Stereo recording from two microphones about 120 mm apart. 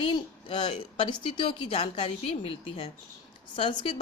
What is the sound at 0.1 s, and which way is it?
A woman's voice, 45° left (ahead or behind).